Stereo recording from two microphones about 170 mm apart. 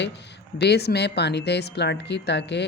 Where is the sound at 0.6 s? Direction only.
75° left (ahead or behind).